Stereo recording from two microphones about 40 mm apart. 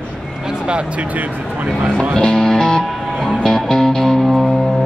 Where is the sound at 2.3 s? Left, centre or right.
Centre.